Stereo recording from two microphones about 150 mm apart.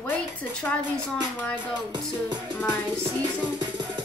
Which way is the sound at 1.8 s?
30° right (ahead or behind).